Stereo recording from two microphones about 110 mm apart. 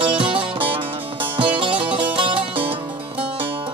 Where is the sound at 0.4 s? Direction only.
55° right (ahead or behind).